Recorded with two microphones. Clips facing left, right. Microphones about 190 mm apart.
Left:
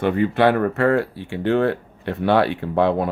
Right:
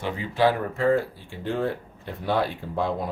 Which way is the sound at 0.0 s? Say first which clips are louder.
Left 6 dB; 60° left (ahead or behind).